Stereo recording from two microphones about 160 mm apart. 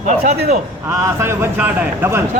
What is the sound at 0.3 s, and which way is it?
Speech, 70° right (ahead or behind).